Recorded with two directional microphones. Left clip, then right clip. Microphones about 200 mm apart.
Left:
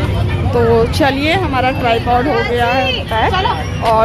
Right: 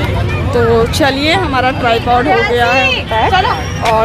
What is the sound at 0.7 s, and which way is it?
Speech, 5° left (ahead or behind).